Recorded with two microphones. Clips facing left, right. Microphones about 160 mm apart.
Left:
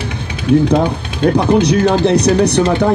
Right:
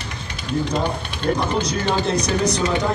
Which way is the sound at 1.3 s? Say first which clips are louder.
Left 9 dB; 65° left (ahead or behind).